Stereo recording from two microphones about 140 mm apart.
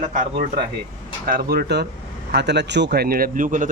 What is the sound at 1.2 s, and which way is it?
Speech, 90° right.